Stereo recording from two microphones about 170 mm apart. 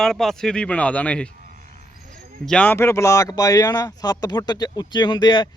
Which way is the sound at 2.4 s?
10° left (ahead or behind).